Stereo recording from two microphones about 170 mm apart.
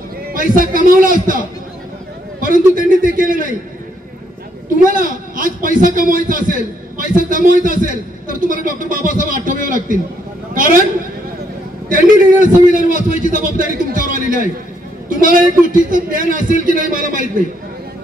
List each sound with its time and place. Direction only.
0.3 s a man's voice: 55° right (ahead or behind)
2.4 s a man's voice: 55° right (ahead or behind)
4.8 s a man's voice: 55° right (ahead or behind)
11.9 s a man's voice: 50° right (ahead or behind)